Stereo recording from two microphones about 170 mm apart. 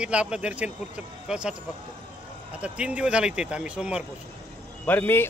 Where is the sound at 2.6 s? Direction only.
5° right (ahead or behind).